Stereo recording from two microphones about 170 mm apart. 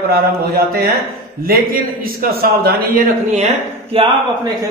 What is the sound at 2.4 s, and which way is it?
Speech, 65° right (ahead or behind).